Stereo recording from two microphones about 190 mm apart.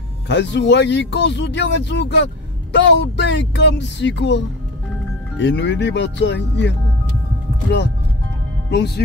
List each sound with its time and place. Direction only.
0.3 s speech: 65° left (ahead or behind)
8.6 s speech: 65° left (ahead or behind)